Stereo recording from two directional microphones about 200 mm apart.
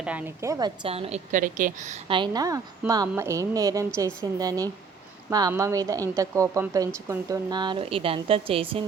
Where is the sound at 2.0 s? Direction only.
25° right (ahead or behind).